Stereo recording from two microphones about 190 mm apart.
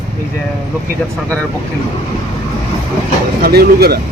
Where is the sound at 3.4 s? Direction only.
55° right (ahead or behind).